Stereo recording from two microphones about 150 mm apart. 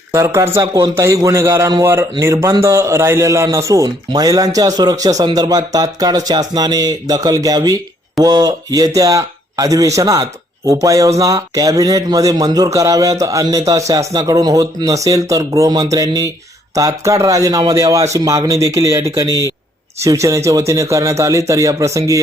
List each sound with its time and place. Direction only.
0.1 s a man's voice: 20° right (ahead or behind)